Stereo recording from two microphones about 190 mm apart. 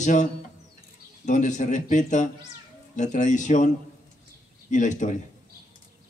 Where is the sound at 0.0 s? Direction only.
40° left (ahead or behind).